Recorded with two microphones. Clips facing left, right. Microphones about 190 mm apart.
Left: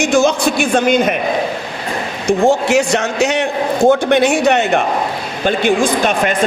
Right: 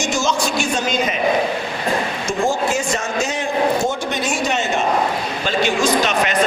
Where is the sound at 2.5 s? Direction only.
70° left (ahead or behind).